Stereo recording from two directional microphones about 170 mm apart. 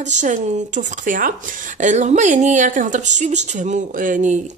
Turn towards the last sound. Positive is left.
turn(degrees=-50)  # may be behind; listen again after turning